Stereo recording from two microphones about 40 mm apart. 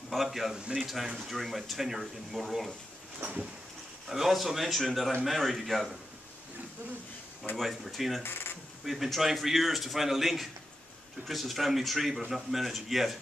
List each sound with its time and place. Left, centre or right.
0.1 s a man's voice: centre
3.2 s a sound: right
4.1 s a man's voice: centre
7.5 s a man's voice: centre
8.2 s speech: left
8.8 s a man's voice: centre